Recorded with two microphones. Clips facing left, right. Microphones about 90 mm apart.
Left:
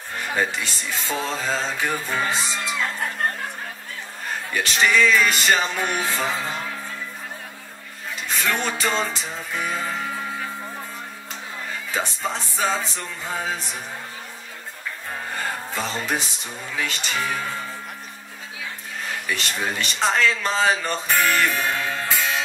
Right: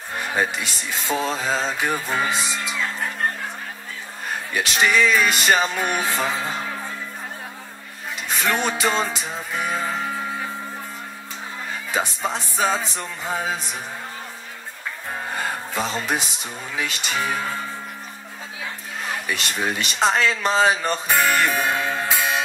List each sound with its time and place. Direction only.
0.4 s speech: 15° right (ahead or behind)
4.6 s speech: 15° right (ahead or behind)
8.4 s speech: 15° right (ahead or behind)
11.9 s speech: 20° right (ahead or behind)
15.3 s music: 20° right (ahead or behind)
16.7 s speech: 15° right (ahead or behind)
19.2 s speech: 20° right (ahead or behind)